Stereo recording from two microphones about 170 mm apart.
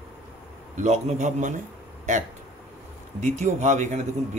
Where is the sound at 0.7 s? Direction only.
45° right (ahead or behind).